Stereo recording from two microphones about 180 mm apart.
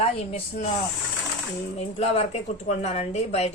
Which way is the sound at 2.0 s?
35° left (ahead or behind).